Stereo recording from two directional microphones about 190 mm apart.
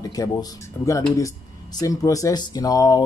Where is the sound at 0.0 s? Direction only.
20° left (ahead or behind).